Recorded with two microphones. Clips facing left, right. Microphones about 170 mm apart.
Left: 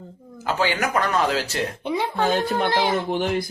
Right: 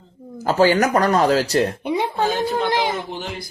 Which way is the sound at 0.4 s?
40° right (ahead or behind).